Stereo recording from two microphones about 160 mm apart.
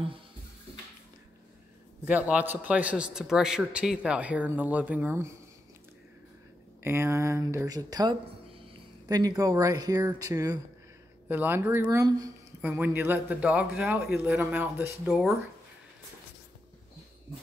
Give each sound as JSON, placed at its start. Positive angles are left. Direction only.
{"t": 2.0, "sound": "a man's voice", "side_deg": -10}
{"t": 6.8, "sound": "a man's voice", "side_deg": -15}